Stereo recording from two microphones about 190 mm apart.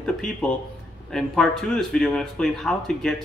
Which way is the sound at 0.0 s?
5° left (ahead or behind).